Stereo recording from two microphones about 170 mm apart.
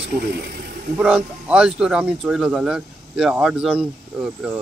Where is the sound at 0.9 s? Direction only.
10° right (ahead or behind).